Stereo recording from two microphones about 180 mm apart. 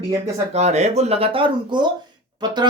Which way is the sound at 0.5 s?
40° right (ahead or behind).